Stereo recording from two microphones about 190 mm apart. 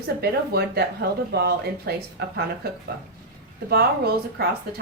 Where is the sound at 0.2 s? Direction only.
55° right (ahead or behind).